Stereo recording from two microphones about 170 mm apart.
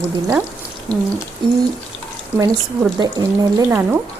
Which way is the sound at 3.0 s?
20° right (ahead or behind).